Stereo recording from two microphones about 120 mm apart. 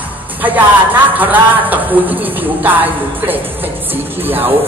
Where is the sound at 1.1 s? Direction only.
15° right (ahead or behind).